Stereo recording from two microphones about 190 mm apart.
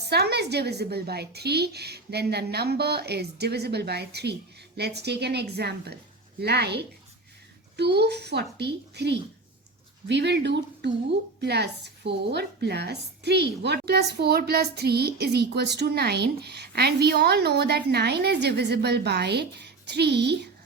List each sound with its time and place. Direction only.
0.0 s a woman's voice: 60° right (ahead or behind)